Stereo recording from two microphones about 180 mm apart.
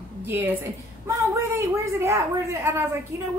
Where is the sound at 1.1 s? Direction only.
15° right (ahead or behind).